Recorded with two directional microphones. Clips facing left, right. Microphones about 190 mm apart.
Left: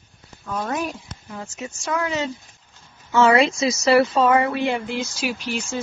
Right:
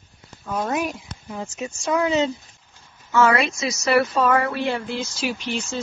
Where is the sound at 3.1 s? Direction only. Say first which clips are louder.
Left 3 dB; 25° left (ahead or behind); by 5.8 s 10° left (ahead or behind).